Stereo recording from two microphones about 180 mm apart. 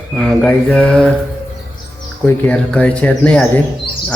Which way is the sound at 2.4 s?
5° left (ahead or behind).